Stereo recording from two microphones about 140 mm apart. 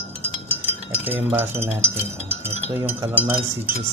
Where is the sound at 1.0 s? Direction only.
15° right (ahead or behind).